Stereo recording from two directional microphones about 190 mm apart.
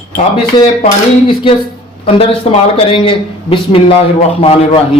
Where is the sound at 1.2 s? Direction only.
25° left (ahead or behind).